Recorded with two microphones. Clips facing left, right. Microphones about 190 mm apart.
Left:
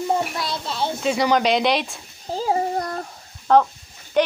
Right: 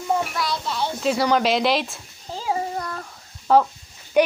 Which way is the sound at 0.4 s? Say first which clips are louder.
Right 1 dB; 25° left (ahead or behind).